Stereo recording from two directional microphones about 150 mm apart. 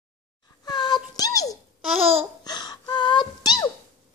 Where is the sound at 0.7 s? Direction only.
30° left (ahead or behind).